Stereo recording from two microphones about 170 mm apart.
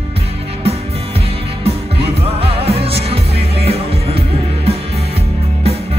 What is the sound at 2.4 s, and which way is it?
Music, 35° right (ahead or behind).